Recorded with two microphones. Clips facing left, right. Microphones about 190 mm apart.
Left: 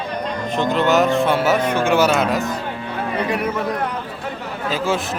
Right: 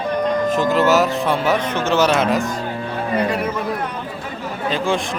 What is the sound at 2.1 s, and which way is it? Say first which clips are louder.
Speech: right 1 dB; centre (ahead or behind).